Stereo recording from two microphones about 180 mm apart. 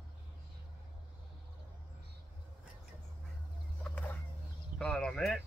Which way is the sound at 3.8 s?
10° left (ahead or behind).